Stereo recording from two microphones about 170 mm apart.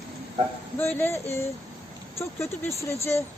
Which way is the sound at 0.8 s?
10° left (ahead or behind).